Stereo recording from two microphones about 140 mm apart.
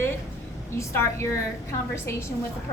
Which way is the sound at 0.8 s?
20° left (ahead or behind).